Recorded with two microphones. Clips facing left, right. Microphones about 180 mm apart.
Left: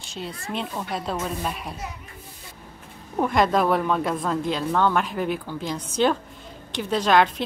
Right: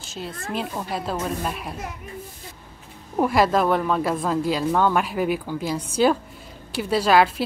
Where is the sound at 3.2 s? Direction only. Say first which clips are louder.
Right 1 dB; 5° right (ahead or behind).